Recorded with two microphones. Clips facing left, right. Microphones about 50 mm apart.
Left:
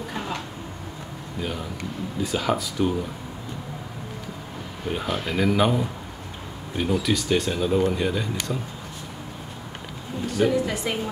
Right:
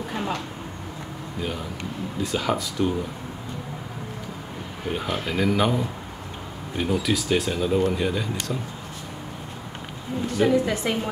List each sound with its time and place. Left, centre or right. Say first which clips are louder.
0.1 s a sound: right 3 dB; centre
2.2 s speech: left 1 dB; centre
4.8 s speech: even; centre
10.5 s a woman's voice: right 2 dB; right